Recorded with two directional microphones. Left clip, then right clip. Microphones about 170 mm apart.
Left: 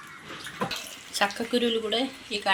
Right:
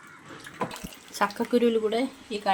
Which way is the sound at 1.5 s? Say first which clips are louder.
Right 2 dB; 65° right (ahead or behind).